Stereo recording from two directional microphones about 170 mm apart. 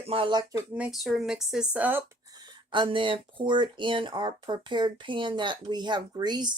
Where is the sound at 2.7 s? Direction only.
30° right (ahead or behind).